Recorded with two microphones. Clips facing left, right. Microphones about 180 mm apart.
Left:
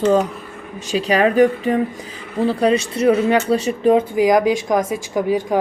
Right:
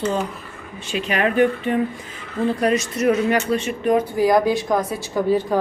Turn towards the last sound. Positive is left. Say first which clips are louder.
# left 1 dB
turn(degrees=15)  # may be behind; listen again after turning